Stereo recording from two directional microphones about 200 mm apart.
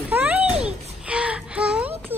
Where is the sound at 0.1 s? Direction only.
5° right (ahead or behind).